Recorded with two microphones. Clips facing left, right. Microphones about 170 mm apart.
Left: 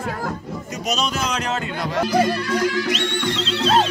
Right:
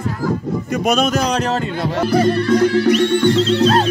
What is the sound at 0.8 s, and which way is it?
Speech, 50° right (ahead or behind).